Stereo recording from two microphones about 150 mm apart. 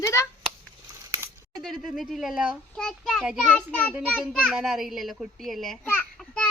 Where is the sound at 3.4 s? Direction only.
10° left (ahead or behind).